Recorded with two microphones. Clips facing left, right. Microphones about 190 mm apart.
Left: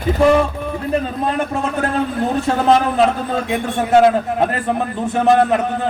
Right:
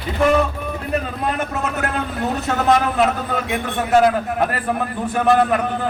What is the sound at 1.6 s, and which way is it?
Speech, 30° left (ahead or behind).